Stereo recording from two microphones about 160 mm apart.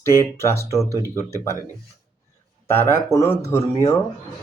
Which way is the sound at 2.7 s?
15° left (ahead or behind).